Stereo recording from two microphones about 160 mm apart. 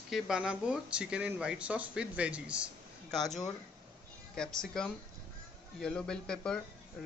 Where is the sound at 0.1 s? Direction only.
5° right (ahead or behind).